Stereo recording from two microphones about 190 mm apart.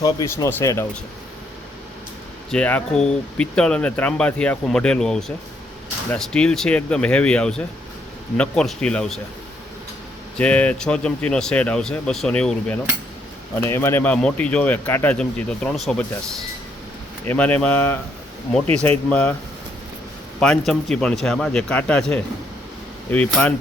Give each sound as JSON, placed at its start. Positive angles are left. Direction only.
{"t": 0.0, "sound": "speech", "side_deg": 20}
{"t": 2.5, "sound": "speech", "side_deg": 5}
{"t": 10.3, "sound": "speech", "side_deg": 5}
{"t": 17.2, "sound": "speech", "side_deg": 10}
{"t": 20.4, "sound": "speech", "side_deg": 5}